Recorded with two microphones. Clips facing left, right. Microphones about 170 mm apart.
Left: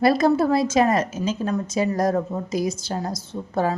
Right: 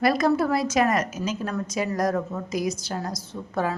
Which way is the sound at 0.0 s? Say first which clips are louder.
Left 3 dB; 30° left (ahead or behind).